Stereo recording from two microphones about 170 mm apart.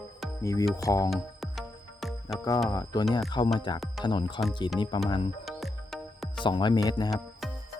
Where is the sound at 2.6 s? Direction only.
25° left (ahead or behind).